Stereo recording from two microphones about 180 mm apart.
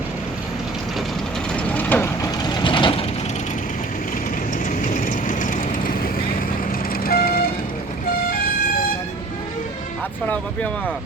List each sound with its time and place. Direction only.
1.5 s vehicle: 10° left (ahead or behind); by 3.1 s 30° left (ahead or behind)
4.6 s vehicle: 45° left (ahead or behind)